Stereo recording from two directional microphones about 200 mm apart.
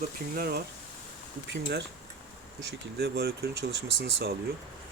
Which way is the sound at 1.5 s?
55° right (ahead or behind).